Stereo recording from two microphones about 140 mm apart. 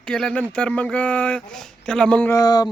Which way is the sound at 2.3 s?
25° left (ahead or behind).